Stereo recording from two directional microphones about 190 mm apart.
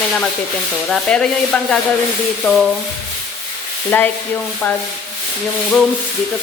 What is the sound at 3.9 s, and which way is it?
Sizzle, 10° left (ahead or behind).